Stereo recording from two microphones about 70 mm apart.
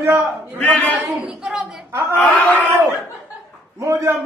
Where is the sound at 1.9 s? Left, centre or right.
Right.